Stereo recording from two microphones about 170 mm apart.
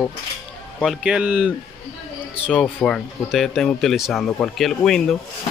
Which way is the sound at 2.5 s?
5° left (ahead or behind).